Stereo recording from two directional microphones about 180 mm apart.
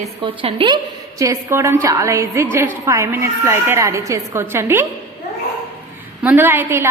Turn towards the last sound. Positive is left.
turn(degrees=-10)  # may be behind; listen again after turning